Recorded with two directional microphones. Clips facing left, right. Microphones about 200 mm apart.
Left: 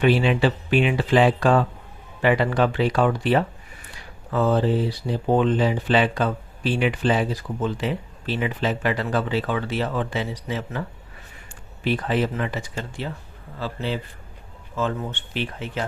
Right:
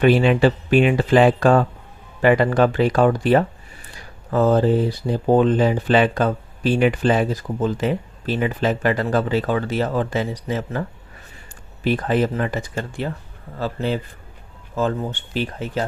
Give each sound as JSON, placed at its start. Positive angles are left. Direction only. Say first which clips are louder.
{"t": 0.0, "sound": "speech", "louder": "right 4 dB", "side_deg": -50}